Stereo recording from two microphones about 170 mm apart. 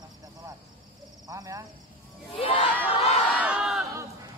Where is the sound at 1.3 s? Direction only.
20° right (ahead or behind).